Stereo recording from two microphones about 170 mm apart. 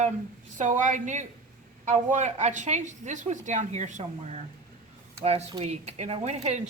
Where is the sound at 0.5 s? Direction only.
50° right (ahead or behind).